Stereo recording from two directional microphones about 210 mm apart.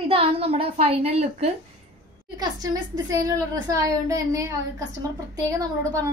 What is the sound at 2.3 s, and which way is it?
A woman's voice, 15° right (ahead or behind).